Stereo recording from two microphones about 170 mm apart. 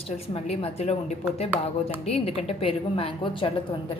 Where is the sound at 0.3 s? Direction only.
35° left (ahead or behind).